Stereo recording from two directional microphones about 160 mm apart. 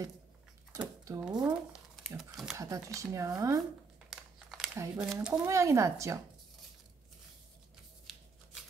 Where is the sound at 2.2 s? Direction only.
Centre (ahead or behind).